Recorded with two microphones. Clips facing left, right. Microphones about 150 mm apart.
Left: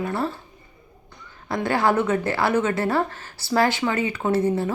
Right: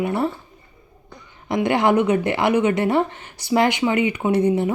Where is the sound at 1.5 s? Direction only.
20° right (ahead or behind).